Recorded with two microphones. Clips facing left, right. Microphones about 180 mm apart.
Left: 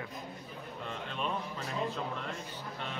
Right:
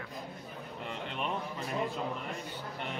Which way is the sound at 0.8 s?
20° right (ahead or behind).